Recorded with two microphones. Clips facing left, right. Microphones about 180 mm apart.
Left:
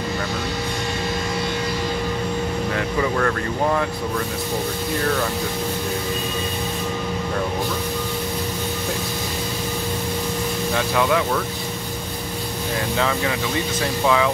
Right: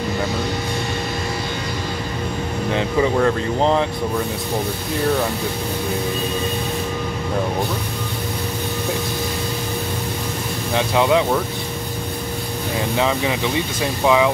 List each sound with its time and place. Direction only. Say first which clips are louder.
2.7 s speech: right 6 dB; 20° right (ahead or behind)
10.7 s speech: right 4 dB; 20° right (ahead or behind)
12.9 s speech: right 3 dB; 15° right (ahead or behind)